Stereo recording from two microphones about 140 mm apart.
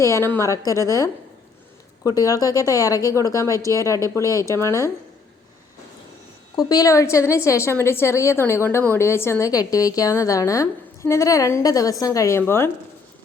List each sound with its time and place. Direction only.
0.0 s a woman's voice: 20° left (ahead or behind)
6.6 s a woman's voice: 25° left (ahead or behind)